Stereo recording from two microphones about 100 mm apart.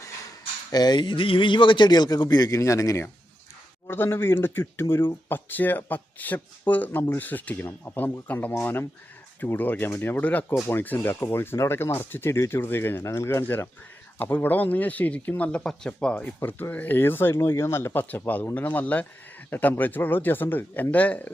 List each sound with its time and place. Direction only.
0.7 s a man's voice: 45° left (ahead or behind); by 21.3 s 15° left (ahead or behind)